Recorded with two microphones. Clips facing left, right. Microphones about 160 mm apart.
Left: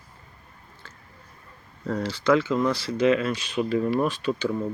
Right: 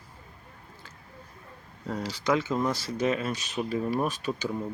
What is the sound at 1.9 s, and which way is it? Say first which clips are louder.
Speech: left 5 dB; 15° right (ahead or behind).